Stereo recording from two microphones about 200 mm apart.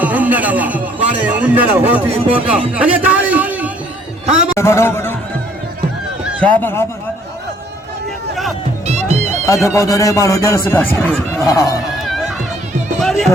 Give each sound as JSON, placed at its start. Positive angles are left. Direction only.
{"t": 0.0, "sound": "a man's voice", "side_deg": -10}
{"t": 2.0, "sound": "speech", "side_deg": -30}
{"t": 2.3, "sound": "a man's voice", "side_deg": -5}
{"t": 4.5, "sound": "speech", "side_deg": 15}
{"t": 6.4, "sound": "speech", "side_deg": 10}
{"t": 8.9, "sound": "music", "side_deg": -35}
{"t": 9.5, "sound": "speech", "side_deg": 15}
{"t": 13.0, "sound": "music", "side_deg": 0}